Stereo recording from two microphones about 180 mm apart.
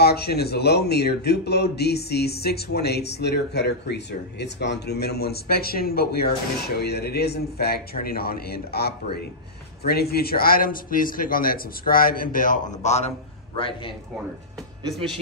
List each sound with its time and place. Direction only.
0.0 s a man's voice: 65° left (ahead or behind); by 13.1 s 40° left (ahead or behind)